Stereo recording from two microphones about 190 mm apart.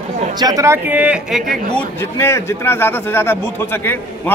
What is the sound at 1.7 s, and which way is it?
A man's voice, 15° left (ahead or behind).